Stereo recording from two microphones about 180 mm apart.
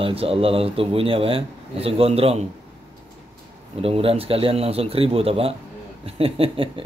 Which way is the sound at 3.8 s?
30° right (ahead or behind).